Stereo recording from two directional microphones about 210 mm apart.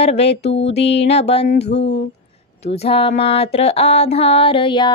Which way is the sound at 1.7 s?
60° left (ahead or behind).